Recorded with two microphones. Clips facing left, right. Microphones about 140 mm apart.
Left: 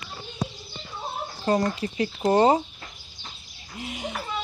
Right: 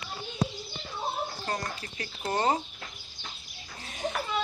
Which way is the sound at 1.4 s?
25° left (ahead or behind).